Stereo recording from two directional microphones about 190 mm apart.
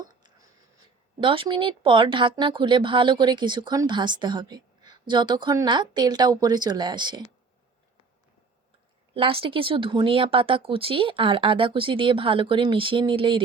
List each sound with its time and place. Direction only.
1.2 s speech: 25° right (ahead or behind)
9.1 s speech: 30° right (ahead or behind)